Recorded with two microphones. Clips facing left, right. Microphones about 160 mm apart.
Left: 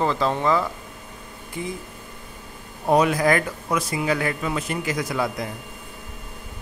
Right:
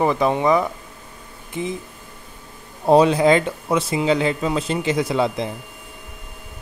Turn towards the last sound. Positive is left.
turn(degrees=-25)  # may be behind; listen again after turning